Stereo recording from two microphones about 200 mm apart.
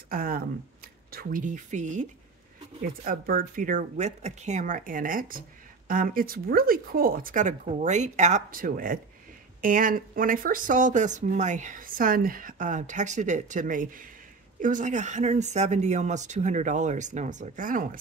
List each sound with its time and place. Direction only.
0.1 s speech: 45° right (ahead or behind)